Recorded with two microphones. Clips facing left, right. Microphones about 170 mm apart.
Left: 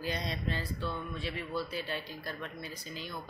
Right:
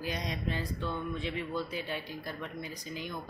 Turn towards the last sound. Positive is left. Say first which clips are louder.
# right 3 dB
turn(degrees=-15)  # may be behind; listen again after turning